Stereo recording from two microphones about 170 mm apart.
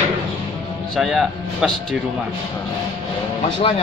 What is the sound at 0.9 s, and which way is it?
Speech, centre (ahead or behind).